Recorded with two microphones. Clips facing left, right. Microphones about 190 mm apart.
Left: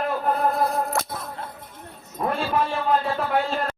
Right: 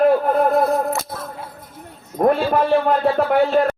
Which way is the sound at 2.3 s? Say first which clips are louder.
Right 8 dB; 55° right (ahead or behind).